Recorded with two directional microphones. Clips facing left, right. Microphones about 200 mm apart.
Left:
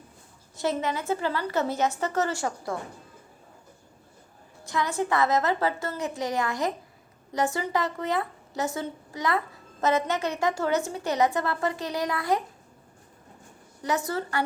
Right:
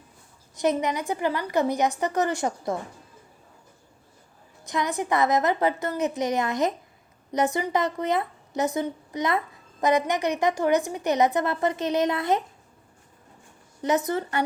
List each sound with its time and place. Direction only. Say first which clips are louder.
0.5 s a woman's voice: right 3 dB; 15° right (ahead or behind)
4.6 s a woman's voice: even; 20° right (ahead or behind)
13.8 s a woman's voice: right 4 dB; 20° right (ahead or behind)